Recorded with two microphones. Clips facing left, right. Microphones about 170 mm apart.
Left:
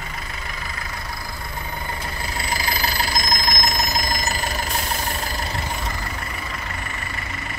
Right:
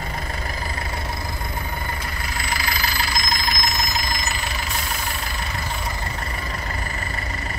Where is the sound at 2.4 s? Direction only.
30° left (ahead or behind).